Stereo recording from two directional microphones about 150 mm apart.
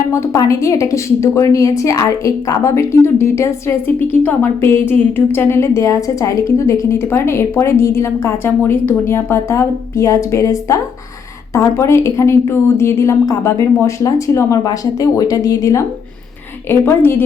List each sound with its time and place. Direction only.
0.1 s a woman's voice: 20° left (ahead or behind)